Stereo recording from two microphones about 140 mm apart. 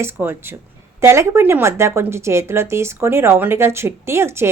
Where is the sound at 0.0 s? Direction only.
15° right (ahead or behind).